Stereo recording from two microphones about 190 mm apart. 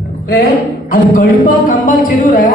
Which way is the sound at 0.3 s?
50° left (ahead or behind).